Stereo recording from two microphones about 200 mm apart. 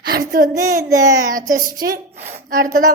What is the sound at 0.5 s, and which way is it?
Music, 15° right (ahead or behind).